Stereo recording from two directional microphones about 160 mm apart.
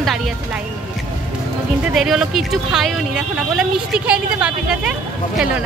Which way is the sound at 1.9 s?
5° right (ahead or behind).